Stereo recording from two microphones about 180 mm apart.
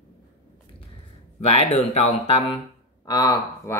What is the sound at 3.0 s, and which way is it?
Speech, 20° left (ahead or behind).